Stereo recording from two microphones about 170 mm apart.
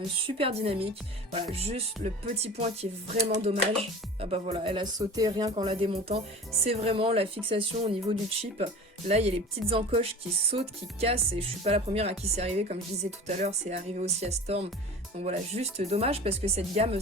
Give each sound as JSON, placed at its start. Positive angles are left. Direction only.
{"t": 0.3, "sound": "speech", "side_deg": -35}